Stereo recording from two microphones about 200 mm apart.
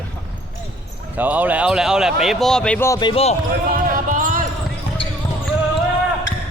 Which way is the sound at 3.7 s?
45° right (ahead or behind).